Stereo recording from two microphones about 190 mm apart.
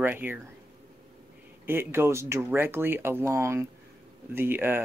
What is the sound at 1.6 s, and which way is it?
Speech, 10° right (ahead or behind).